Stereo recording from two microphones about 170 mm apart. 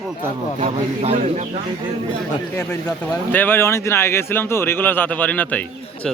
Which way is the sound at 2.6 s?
10° left (ahead or behind).